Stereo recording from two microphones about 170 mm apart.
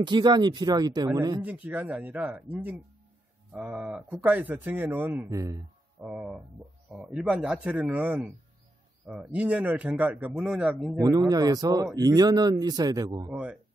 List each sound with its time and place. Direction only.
0.0 s speech: 25° right (ahead or behind)
1.4 s a man's voice: 10° right (ahead or behind)
6.0 s a man's voice: 5° right (ahead or behind)
11.0 s speech: 25° right (ahead or behind)
13.3 s a man's voice: 5° right (ahead or behind)